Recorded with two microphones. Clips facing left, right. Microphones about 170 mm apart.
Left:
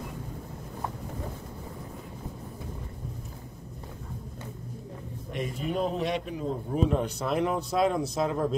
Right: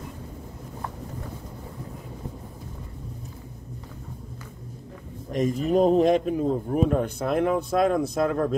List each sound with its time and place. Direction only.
5.3 s speech: 40° right (ahead or behind); by 8.5 s 60° right (ahead or behind)